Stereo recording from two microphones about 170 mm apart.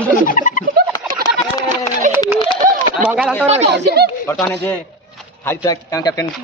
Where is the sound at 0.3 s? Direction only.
50° left (ahead or behind).